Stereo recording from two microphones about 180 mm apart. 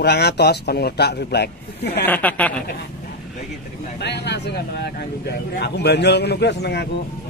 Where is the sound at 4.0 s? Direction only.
70° left (ahead or behind).